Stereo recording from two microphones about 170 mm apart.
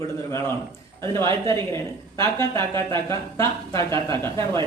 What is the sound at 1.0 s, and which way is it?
Speech, 15° left (ahead or behind).